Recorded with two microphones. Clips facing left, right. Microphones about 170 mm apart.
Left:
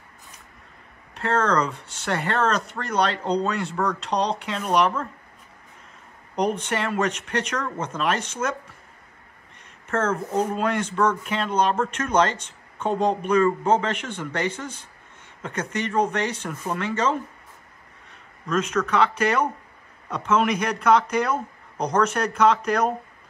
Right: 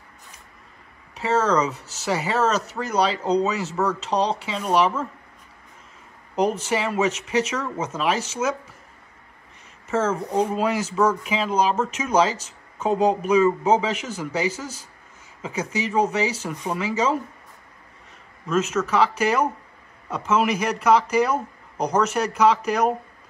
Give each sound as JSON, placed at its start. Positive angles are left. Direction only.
{"t": 1.1, "sound": "speech", "side_deg": -5}
{"t": 6.3, "sound": "speech", "side_deg": -5}
{"t": 9.8, "sound": "speech", "side_deg": -5}
{"t": 18.5, "sound": "speech", "side_deg": -5}